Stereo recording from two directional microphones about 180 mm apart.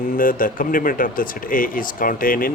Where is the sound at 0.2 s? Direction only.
50° left (ahead or behind).